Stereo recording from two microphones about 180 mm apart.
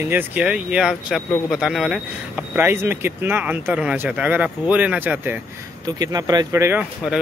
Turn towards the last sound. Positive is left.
turn(degrees=-5)  # may be behind; listen again after turning